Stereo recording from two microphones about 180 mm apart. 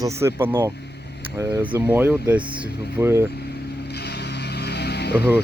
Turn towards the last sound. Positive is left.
turn(degrees=65)  # may be behind; listen again after turning